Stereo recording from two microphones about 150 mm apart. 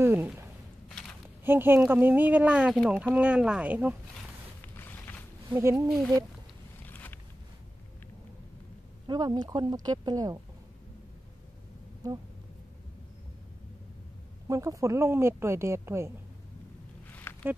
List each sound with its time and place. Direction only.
0.0 s speech: 15° right (ahead or behind)
0.8 s walk: 5° left (ahead or behind)
1.4 s a woman's voice: 15° right (ahead or behind)
2.7 s a woman's voice: 5° left (ahead or behind)
4.6 s a sound: 15° left (ahead or behind)
5.5 s a woman's voice: 20° right (ahead or behind)
6.9 s a sound: 10° left (ahead or behind)
9.0 s speech: 30° right (ahead or behind)
12.0 s speech: 25° right (ahead or behind)
14.5 s a woman's voice: 20° right (ahead or behind)
17.1 s a sound: 15° left (ahead or behind)